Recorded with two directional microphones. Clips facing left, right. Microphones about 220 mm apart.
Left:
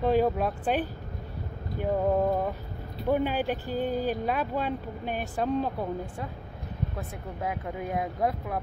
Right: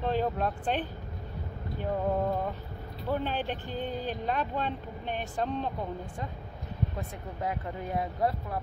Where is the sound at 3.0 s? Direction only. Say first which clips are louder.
Left 5 dB; 10° left (ahead or behind).